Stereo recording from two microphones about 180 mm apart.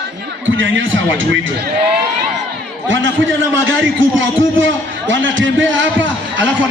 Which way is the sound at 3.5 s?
90° right.